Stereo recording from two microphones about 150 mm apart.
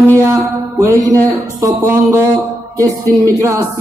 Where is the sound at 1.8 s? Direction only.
20° right (ahead or behind).